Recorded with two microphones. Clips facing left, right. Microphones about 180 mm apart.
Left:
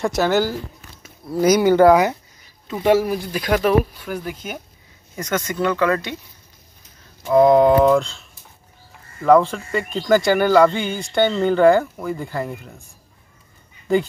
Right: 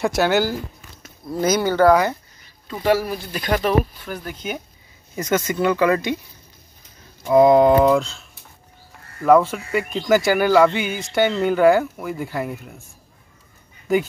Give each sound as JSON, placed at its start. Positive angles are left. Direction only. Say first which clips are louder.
{"t": 0.0, "sound": "speech", "louder": "even", "side_deg": -5}
{"t": 1.0, "sound": "speech", "louder": "left 4 dB", "side_deg": 10}
{"t": 3.3, "sound": "speech", "louder": "right 1 dB", "side_deg": 5}
{"t": 5.1, "sound": "speech", "louder": "right 3 dB", "side_deg": -5}
{"t": 7.2, "sound": "speech", "louder": "even", "side_deg": -5}